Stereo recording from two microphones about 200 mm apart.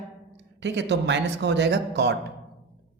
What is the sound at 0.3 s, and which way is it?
Speech, 60° right (ahead or behind).